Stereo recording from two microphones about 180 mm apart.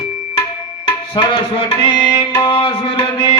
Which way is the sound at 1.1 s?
20° left (ahead or behind).